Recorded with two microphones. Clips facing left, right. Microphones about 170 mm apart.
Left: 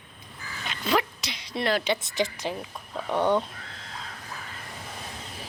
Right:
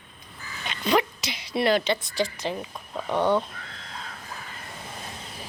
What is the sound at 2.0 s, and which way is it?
Speech, 20° left (ahead or behind).